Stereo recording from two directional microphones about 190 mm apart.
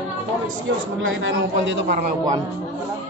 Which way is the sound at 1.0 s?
80° right.